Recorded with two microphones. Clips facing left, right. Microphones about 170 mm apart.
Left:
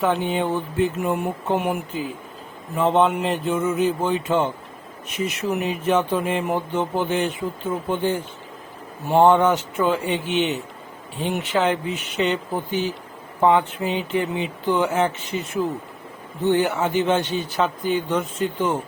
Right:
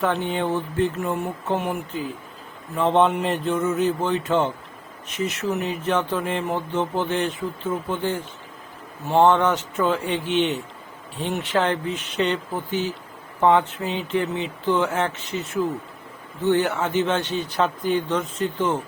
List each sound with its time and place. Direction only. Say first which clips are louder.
0.0 s speech: left 2 dB; 10° left (ahead or behind)
16.5 s speech: left 1 dB; 10° left (ahead or behind)